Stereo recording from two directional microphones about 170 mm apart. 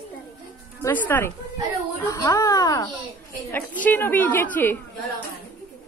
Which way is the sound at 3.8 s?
10° left (ahead or behind).